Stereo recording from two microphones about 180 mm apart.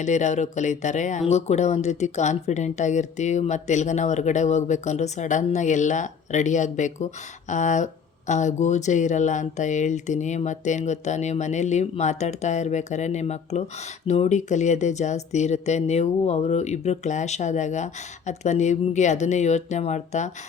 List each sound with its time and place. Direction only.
0.0 s speech: 40° left (ahead or behind)